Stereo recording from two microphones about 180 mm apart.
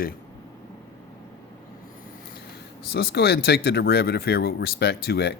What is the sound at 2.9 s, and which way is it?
Speech, 60° left (ahead or behind).